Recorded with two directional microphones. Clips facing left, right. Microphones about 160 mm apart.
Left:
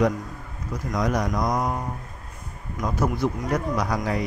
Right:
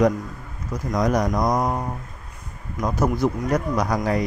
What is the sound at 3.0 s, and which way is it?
A man's voice, 45° right (ahead or behind).